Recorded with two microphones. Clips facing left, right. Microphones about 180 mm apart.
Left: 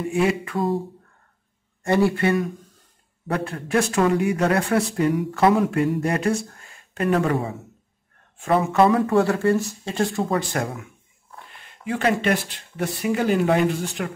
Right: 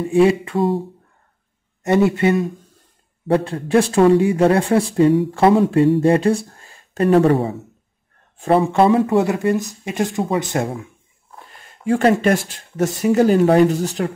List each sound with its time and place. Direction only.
0.1 s speech: 30° right (ahead or behind)
1.8 s speech: 20° right (ahead or behind)
11.5 s speech: 45° right (ahead or behind)